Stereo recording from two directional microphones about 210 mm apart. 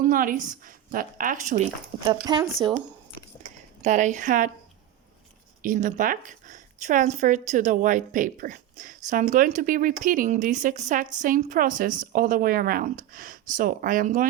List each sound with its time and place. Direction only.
0.0 s speech: 40° right (ahead or behind)
2.0 s speech: 20° right (ahead or behind)
3.8 s speech: 35° right (ahead or behind)
5.6 s speech: 40° right (ahead or behind)